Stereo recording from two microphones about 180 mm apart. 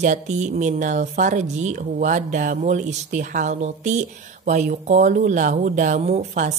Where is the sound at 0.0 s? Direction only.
45° right (ahead or behind).